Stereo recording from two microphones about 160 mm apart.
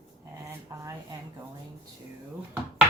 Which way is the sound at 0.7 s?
20° right (ahead or behind).